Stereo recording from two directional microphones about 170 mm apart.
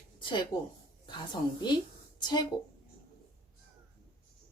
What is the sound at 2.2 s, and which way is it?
Speech, 25° left (ahead or behind).